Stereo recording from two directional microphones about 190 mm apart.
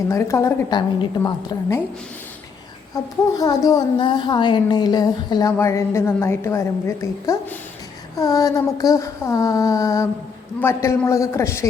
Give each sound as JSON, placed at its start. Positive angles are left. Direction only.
{"t": 0.1, "sound": "speech", "side_deg": 15}
{"t": 2.9, "sound": "a woman's voice", "side_deg": 20}